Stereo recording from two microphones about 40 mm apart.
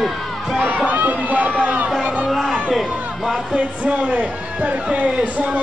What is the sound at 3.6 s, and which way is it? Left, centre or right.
Speech, right.